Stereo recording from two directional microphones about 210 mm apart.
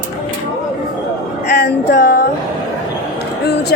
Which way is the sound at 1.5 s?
50° left (ahead or behind).